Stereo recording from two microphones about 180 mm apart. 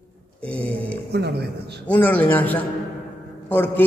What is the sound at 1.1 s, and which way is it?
Speech, 65° right (ahead or behind).